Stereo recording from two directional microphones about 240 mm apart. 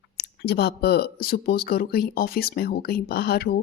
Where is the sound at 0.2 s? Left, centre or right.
Left.